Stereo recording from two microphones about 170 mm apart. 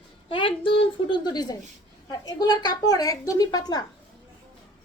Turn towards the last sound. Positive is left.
turn(degrees=20)  # may be behind; listen again after turning